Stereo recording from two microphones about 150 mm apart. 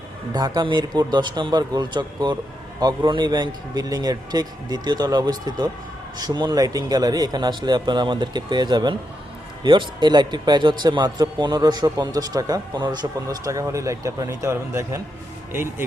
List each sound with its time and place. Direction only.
0.3 s a man's voice: 25° right (ahead or behind)